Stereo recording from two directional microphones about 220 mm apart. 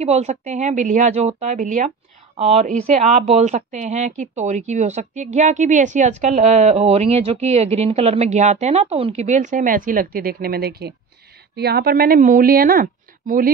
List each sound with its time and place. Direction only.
0.0 s speech: 30° right (ahead or behind)